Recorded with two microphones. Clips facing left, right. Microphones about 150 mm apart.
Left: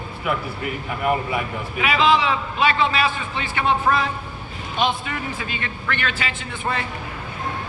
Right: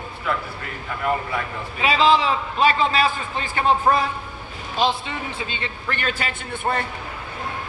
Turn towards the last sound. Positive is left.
turn(degrees=-50)  # may be behind; listen again after turning